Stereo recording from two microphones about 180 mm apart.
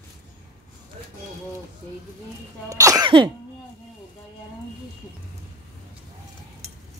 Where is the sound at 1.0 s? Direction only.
35° right (ahead or behind).